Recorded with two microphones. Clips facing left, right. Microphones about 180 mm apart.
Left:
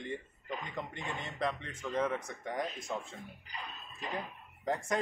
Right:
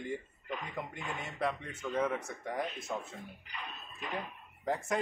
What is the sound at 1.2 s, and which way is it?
Speech, 10° right (ahead or behind).